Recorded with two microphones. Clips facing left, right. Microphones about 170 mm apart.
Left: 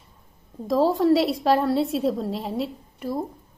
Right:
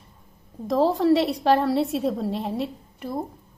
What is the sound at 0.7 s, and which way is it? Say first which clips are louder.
A woman's voice: even; centre (ahead or behind).